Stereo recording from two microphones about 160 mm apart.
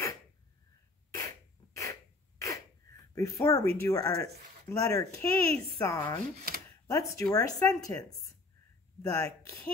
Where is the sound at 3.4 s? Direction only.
20° left (ahead or behind).